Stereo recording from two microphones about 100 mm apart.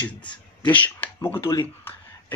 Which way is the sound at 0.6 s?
15° left (ahead or behind).